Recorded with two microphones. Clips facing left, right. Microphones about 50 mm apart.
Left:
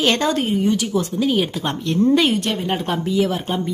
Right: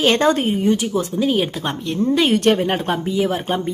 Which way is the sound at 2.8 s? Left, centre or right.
Centre.